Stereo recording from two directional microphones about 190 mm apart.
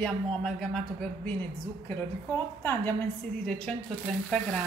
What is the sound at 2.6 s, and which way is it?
Speech, 15° left (ahead or behind).